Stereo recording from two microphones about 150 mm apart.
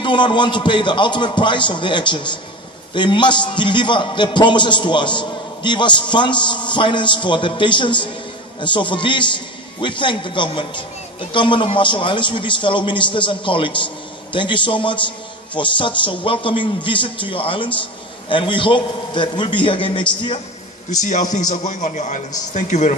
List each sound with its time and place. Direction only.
0.0 s a man's voice: 30° left (ahead or behind)
20.9 s a man's voice: 50° left (ahead or behind)